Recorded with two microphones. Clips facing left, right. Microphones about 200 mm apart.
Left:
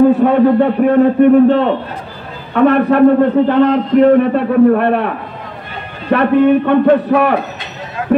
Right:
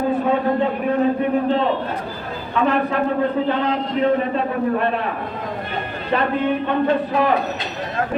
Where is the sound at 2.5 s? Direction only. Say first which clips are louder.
Left 9 dB; 60° left (ahead or behind).